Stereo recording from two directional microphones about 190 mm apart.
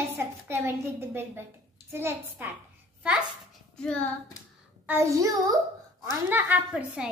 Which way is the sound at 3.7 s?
5° left (ahead or behind).